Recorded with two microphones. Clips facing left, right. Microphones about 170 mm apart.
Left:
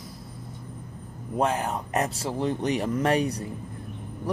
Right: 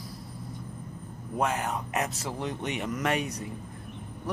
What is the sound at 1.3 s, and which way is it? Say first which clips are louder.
Speech: left 3 dB; 30° left (ahead or behind).